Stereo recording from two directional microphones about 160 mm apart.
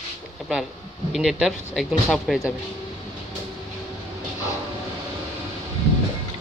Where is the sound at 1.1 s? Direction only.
Centre (ahead or behind).